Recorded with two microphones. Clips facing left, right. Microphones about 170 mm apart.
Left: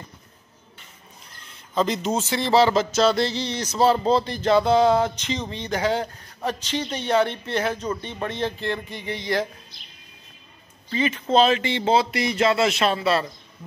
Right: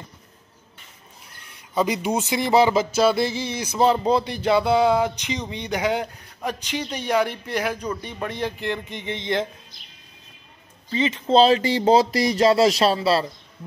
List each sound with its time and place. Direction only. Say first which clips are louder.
1.5 s speech: right 1 dB; 10° right (ahead or behind)
10.9 s speech: right 2 dB; 20° right (ahead or behind)